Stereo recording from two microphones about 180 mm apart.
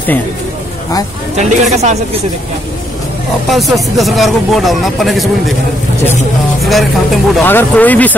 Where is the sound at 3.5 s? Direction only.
Centre (ahead or behind).